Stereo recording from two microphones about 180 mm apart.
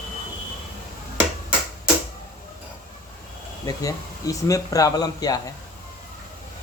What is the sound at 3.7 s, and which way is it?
Speech, 20° left (ahead or behind).